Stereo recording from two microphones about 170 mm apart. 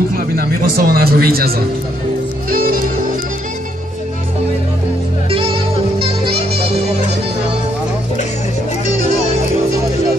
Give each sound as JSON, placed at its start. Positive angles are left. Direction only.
{"t": 0.1, "sound": "a man's voice", "side_deg": -60}
{"t": 2.5, "sound": "music", "side_deg": -60}
{"t": 5.3, "sound": "music", "side_deg": -30}